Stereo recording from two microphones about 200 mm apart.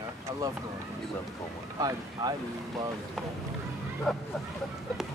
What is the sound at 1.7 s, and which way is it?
Speech, 20° right (ahead or behind).